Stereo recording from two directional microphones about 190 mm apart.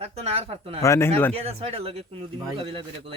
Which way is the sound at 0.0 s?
30° right (ahead or behind).